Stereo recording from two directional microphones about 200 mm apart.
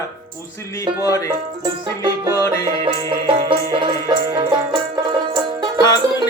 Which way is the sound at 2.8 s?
25° right (ahead or behind).